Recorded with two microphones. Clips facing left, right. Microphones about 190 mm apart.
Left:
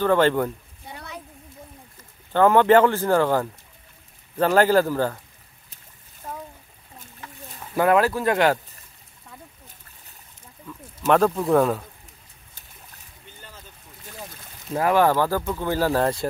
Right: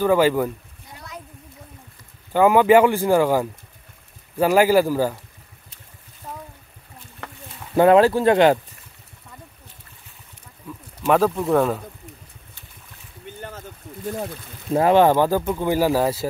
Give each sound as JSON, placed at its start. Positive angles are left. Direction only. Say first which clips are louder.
{"t": 0.0, "sound": "speech", "louder": "right 2 dB", "side_deg": -10}
{"t": 2.3, "sound": "speech", "louder": "right 2 dB", "side_deg": -10}
{"t": 6.2, "sound": "a sound", "louder": "left 1 dB", "side_deg": 0}
{"t": 7.2, "sound": "a sound", "louder": "right 5 dB", "side_deg": -65}
{"t": 7.7, "sound": "speech", "louder": "right 5 dB", "side_deg": -25}
{"t": 11.1, "sound": "speech", "louder": "even", "side_deg": 0}
{"t": 13.4, "sound": "boat", "louder": "right 10 dB", "side_deg": -60}
{"t": 14.7, "sound": "speech", "louder": "right 4 dB", "side_deg": -25}